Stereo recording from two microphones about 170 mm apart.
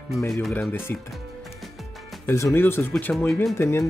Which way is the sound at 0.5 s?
10° left (ahead or behind).